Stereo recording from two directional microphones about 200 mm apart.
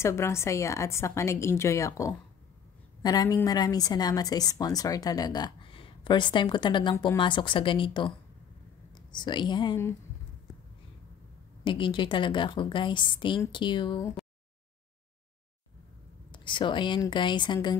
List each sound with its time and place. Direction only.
0.0 s a woman's voice: 15° left (ahead or behind)
11.6 s a woman's voice: 25° left (ahead or behind)
16.3 s a woman's voice: 25° left (ahead or behind)